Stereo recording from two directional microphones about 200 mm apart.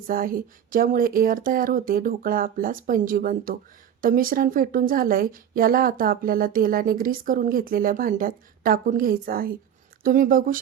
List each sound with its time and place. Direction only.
0.1 s a woman's voice: 45° right (ahead or behind)